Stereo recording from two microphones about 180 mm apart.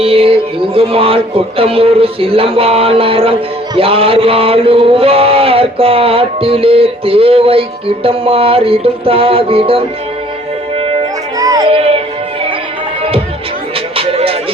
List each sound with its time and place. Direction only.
0.0 s mantra: 30° right (ahead or behind)
11.3 s music: 20° right (ahead or behind)
13.9 s music: 30° right (ahead or behind)